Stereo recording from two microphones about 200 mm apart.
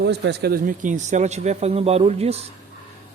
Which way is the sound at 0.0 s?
55° right (ahead or behind).